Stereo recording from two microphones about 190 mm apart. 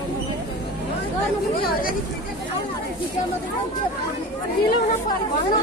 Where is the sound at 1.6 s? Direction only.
50° left (ahead or behind).